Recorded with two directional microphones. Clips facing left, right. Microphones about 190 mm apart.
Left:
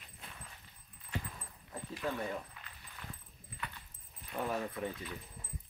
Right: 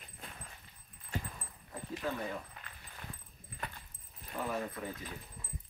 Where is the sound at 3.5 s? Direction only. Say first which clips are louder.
Right 2 dB; 45° right (ahead or behind).